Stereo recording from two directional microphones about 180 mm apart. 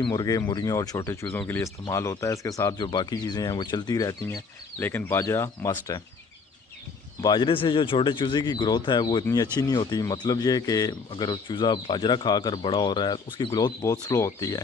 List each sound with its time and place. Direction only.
0.0 s a man's voice: 20° left (ahead or behind)
5.7 s a man's voice: 25° left (ahead or behind)
7.2 s a man's voice: 25° left (ahead or behind)